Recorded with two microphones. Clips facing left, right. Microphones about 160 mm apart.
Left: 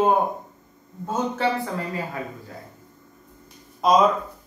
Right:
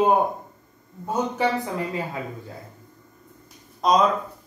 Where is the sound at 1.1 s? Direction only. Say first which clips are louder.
Even; 15° right (ahead or behind).